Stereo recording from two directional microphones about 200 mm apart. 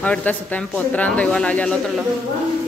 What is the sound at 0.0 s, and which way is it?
Speech, 5° left (ahead or behind).